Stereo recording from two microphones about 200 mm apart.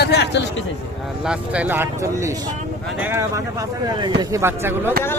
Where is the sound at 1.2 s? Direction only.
5° right (ahead or behind).